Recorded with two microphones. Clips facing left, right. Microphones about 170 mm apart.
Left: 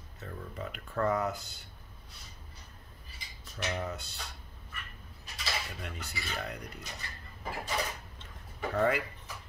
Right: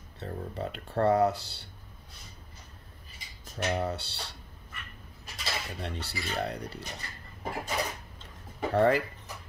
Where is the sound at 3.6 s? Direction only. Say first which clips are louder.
Right 5 dB; 35° right (ahead or behind).